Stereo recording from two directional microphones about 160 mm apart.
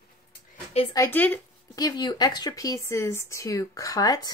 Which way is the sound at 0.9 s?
15° left (ahead or behind).